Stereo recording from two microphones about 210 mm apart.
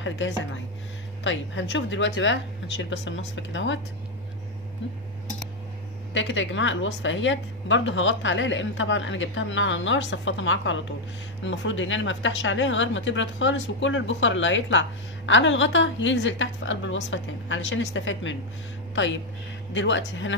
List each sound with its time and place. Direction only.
0.2 s speech: 60° left (ahead or behind)
6.1 s speech: 65° left (ahead or behind)
19.7 s speech: 60° left (ahead or behind)